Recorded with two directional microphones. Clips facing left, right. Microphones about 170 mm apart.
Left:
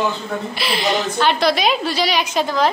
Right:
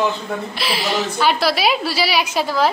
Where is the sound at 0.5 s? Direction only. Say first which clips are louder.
Left 2 dB; centre (ahead or behind).